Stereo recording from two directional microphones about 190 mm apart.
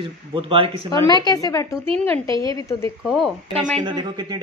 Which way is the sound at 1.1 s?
20° left (ahead or behind).